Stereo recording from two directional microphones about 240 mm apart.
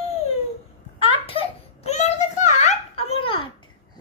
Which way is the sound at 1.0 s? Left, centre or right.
Left.